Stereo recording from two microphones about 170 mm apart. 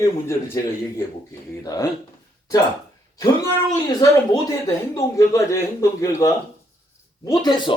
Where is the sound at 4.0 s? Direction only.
20° left (ahead or behind).